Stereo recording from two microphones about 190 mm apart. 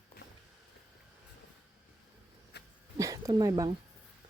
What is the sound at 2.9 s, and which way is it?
Speech, 15° right (ahead or behind).